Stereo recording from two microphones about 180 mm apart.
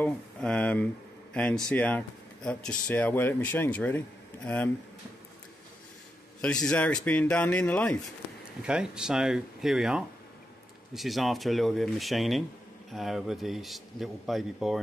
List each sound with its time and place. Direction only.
0.0 s speech: 5° left (ahead or behind)
6.4 s a man's voice: 5° left (ahead or behind)
8.6 s a man's voice: 5° right (ahead or behind)